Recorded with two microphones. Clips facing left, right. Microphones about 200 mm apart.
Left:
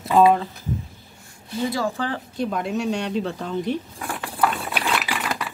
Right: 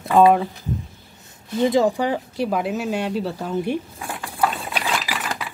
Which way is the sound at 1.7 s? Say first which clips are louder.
Right 7 dB; 20° right (ahead or behind).